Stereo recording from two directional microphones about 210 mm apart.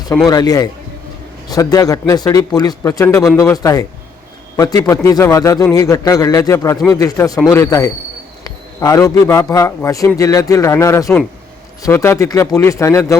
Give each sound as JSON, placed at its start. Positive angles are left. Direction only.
{"t": 0.3, "sound": "a man's voice", "side_deg": 20}